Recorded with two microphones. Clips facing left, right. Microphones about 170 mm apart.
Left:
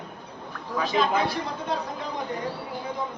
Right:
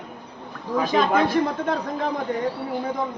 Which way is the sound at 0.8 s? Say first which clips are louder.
Right 4 dB; 50° right (ahead or behind).